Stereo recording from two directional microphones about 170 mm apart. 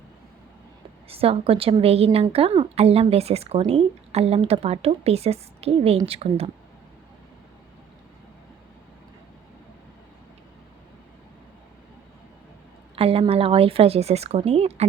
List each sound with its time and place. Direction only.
1.0 s speech: 35° right (ahead or behind)
13.0 s speech: 35° right (ahead or behind)